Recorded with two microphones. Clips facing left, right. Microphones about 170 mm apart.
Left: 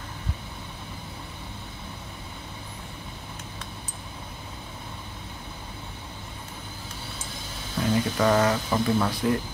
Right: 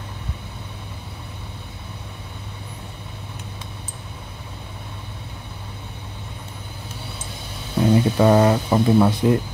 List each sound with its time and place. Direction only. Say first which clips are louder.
7.8 s speech: right 7 dB; 30° right (ahead or behind)